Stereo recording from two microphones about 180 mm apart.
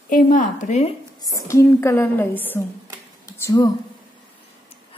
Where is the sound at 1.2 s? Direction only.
15° left (ahead or behind).